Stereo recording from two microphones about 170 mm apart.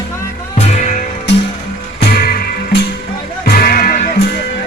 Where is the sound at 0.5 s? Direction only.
45° left (ahead or behind).